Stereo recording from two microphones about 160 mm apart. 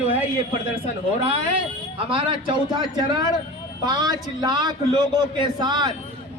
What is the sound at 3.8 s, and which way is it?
Speech, 25° right (ahead or behind).